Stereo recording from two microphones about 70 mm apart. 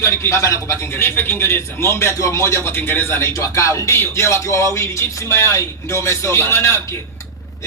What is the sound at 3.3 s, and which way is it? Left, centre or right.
A man's voice, left.